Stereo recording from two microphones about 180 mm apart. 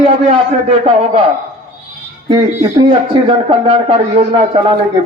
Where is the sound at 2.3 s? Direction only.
25° right (ahead or behind).